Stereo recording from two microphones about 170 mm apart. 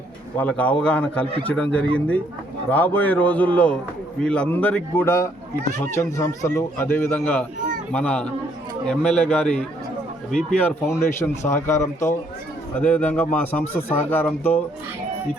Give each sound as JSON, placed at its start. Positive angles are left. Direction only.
{"t": 0.3, "sound": "a man's voice", "side_deg": 10}